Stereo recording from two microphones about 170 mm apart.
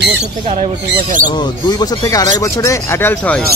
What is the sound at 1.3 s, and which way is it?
Speech, 25° left (ahead or behind).